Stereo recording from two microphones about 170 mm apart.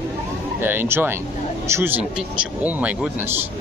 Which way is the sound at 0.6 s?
10° right (ahead or behind).